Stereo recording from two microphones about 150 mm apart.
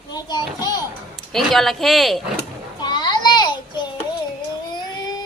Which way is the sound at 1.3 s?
Centre (ahead or behind).